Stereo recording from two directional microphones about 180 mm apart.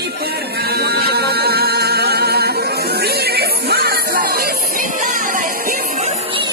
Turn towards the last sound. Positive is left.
turn(degrees=-50)  # may be behind; listen again after turning